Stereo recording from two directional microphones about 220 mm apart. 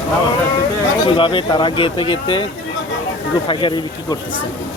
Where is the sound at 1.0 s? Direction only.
20° left (ahead or behind).